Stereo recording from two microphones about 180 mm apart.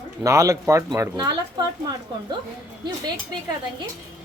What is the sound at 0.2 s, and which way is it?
Speech, 20° right (ahead or behind).